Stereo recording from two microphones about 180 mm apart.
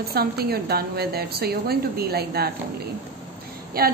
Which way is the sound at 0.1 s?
60° right (ahead or behind).